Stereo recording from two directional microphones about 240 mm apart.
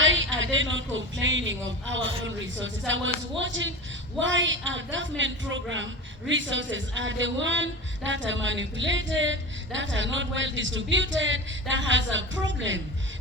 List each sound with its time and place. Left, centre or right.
0.0 s a man's voice: right